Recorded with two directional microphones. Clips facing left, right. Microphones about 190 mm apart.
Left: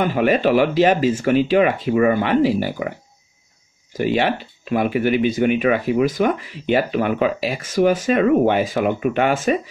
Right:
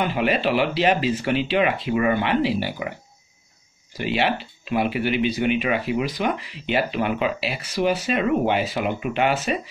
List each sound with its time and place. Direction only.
0.0 s speech: 45° left (ahead or behind)
3.9 s speech: 45° left (ahead or behind)